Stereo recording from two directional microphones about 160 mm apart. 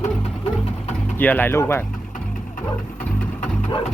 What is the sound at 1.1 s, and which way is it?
Speech, 10° left (ahead or behind).